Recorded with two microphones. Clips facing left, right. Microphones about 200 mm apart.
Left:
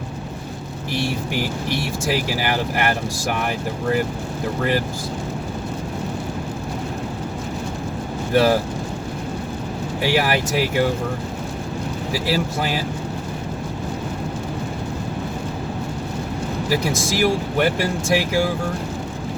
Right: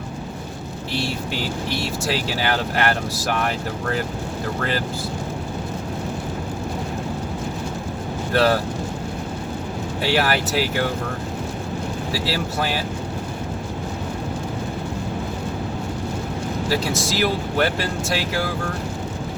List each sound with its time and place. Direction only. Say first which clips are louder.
0.9 s speech: left 2 dB; 15° left (ahead or behind)
8.3 s speech: left 2 dB; 15° left (ahead or behind)
10.0 s speech: left 1 dB; 15° left (ahead or behind)
12.1 s speech: left 4 dB; 15° left (ahead or behind)
16.6 s speech: left 2 dB; 15° left (ahead or behind)